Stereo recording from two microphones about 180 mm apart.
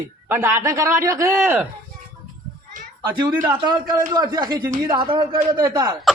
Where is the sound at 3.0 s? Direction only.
25° right (ahead or behind).